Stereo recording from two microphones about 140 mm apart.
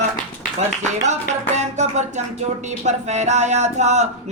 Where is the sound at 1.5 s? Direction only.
55° right (ahead or behind).